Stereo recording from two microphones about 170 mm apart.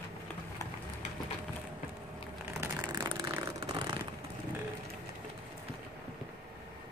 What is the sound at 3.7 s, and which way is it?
Vehicle, 25° right (ahead or behind).